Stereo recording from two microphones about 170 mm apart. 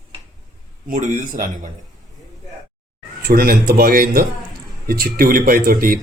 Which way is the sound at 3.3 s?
60° right (ahead or behind).